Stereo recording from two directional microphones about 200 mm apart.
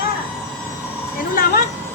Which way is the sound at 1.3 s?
50° left (ahead or behind).